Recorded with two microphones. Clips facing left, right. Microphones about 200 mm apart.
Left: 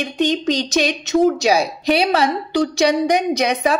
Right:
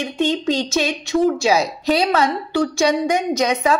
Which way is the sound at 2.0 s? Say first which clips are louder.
Even; 30° left (ahead or behind).